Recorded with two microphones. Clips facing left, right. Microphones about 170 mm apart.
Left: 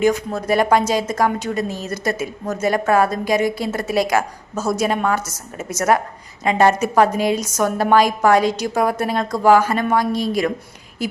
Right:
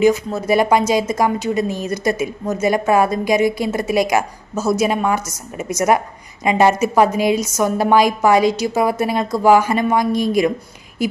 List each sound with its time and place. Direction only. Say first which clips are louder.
0.3 s a woman's voice: right 1 dB; 10° right (ahead or behind)